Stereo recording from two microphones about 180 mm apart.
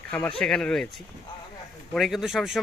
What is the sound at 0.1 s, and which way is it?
Speech, 5° left (ahead or behind).